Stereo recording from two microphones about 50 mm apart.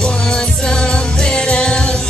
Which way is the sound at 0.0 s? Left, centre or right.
Centre.